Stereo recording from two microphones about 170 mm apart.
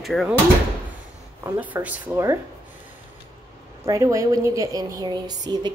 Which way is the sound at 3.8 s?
20° right (ahead or behind).